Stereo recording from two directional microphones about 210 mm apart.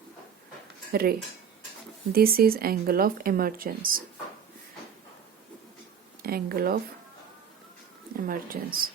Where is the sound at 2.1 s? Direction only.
45° right (ahead or behind).